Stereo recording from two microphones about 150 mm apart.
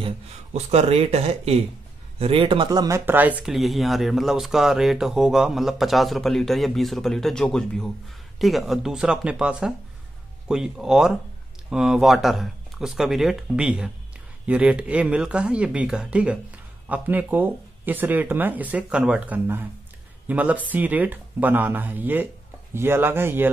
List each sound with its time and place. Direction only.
0.0 s speech: 45° right (ahead or behind); by 3.0 s 25° right (ahead or behind)
3.1 s a man's voice: 10° right (ahead or behind)